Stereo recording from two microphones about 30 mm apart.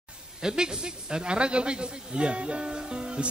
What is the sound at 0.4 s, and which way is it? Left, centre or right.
A woman's voice, right.